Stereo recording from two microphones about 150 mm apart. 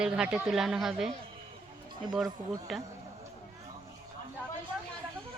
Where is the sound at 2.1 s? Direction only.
Centre (ahead or behind).